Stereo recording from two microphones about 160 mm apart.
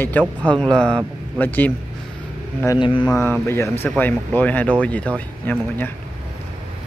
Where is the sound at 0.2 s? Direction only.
10° left (ahead or behind).